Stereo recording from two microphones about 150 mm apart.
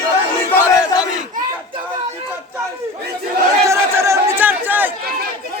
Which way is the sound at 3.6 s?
20° right (ahead or behind).